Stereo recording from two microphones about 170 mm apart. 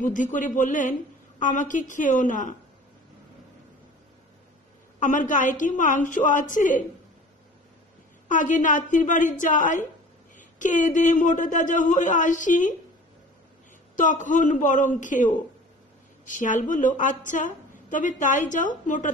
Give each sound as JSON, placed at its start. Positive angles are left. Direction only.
{"t": 0.0, "sound": "a woman's voice", "side_deg": 50}
{"t": 5.0, "sound": "a woman's voice", "side_deg": 50}
{"t": 8.3, "sound": "a woman's voice", "side_deg": 50}
{"t": 13.9, "sound": "a woman's voice", "side_deg": 50}